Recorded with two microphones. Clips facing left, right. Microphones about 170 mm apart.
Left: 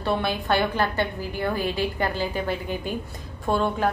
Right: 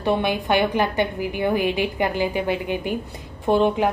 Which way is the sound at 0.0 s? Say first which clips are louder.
Right 4 dB; 15° right (ahead or behind).